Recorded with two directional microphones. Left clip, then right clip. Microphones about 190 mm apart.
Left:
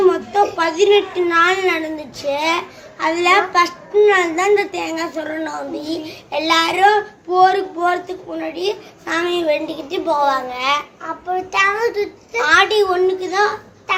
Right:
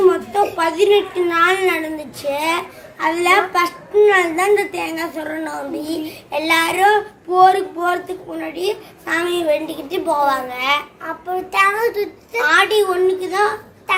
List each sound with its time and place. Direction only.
0.0 s a sound: 10° left (ahead or behind)
0.5 s a woman's voice: 10° left (ahead or behind)
11.0 s a child's voice: 10° right (ahead or behind)
12.4 s a woman's voice: 10° left (ahead or behind)